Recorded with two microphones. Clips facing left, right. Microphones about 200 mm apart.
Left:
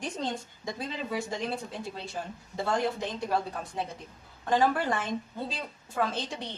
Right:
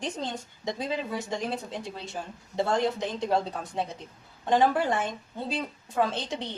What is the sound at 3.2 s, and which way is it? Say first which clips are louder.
Speech: right 4 dB; 25° right (ahead or behind).